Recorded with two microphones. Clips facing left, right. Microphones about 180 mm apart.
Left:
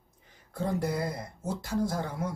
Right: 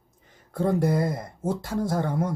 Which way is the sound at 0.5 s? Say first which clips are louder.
Right 7 dB; 55° right (ahead or behind).